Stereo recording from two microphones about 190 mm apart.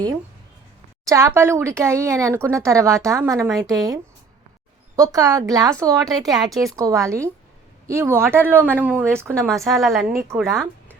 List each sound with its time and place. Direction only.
1.0 s speech: 15° right (ahead or behind)
6.2 s speech: centre (ahead or behind)
6.7 s speech: 15° right (ahead or behind)
9.3 s speech: centre (ahead or behind)
10.1 s speech: 15° right (ahead or behind)
10.3 s speech: centre (ahead or behind)